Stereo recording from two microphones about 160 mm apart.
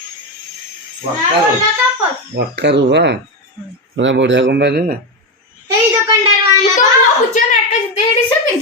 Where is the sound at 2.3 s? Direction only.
90° right.